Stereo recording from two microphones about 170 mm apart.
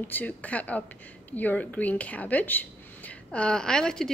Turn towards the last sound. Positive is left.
turn(degrees=5)  # may be behind; listen again after turning